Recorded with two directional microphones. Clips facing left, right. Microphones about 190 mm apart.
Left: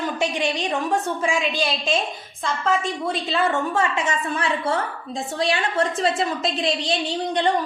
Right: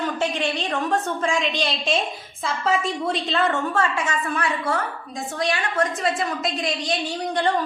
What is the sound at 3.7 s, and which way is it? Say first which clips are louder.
Speech: left 1 dB; 20° left (ahead or behind).